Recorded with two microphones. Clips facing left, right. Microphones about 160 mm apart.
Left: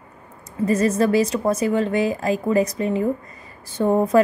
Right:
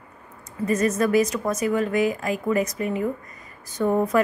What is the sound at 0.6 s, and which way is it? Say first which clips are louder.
A woman's voice: left 3 dB; 30° left (ahead or behind).